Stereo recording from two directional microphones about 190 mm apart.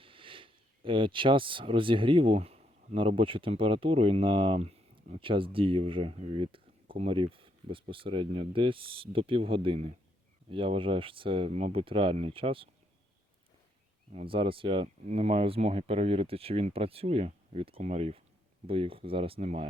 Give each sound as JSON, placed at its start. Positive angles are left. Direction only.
{"t": 0.0, "sound": "speech", "side_deg": -25}
{"t": 14.1, "sound": "speech", "side_deg": -30}